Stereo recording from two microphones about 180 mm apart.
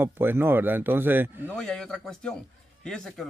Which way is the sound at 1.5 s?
5° left (ahead or behind).